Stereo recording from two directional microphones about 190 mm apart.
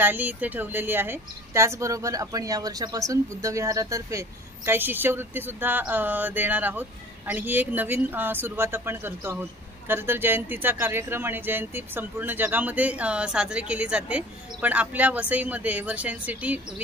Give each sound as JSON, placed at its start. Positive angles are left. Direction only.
{"t": 0.0, "sound": "speech", "side_deg": -10}